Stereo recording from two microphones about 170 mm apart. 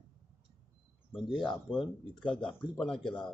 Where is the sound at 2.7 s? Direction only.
5° left (ahead or behind).